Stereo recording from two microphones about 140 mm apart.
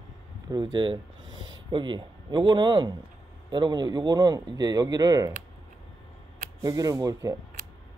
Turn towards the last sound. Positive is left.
turn(degrees=-25)  # may be behind; listen again after turning